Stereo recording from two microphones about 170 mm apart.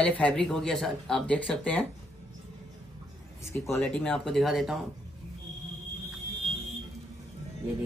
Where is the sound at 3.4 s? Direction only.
15° left (ahead or behind); by 4.8 s centre (ahead or behind).